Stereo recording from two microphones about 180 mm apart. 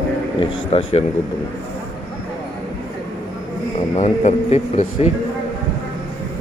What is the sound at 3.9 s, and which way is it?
Speech, 40° left (ahead or behind).